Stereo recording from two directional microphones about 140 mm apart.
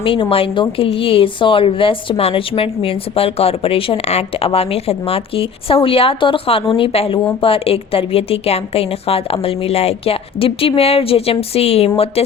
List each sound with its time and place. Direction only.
0.0 s a woman's voice: 40° left (ahead or behind)